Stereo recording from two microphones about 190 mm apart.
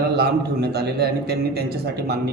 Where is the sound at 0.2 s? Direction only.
60° right (ahead or behind).